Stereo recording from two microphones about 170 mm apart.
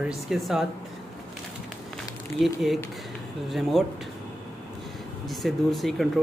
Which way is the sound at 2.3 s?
Centre (ahead or behind).